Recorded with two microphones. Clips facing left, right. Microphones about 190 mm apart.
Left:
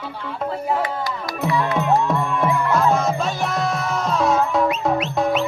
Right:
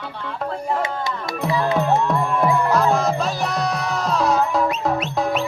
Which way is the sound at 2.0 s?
Centre (ahead or behind).